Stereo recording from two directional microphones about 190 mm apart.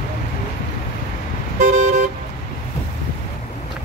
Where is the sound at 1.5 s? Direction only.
45° right (ahead or behind).